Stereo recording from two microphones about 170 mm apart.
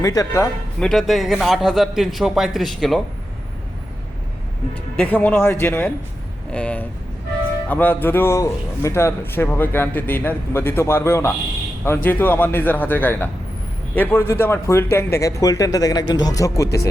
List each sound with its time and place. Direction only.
0.0 s speech: 20° left (ahead or behind)
0.8 s a man's voice: centre (ahead or behind)
4.9 s a man's voice: 10° left (ahead or behind)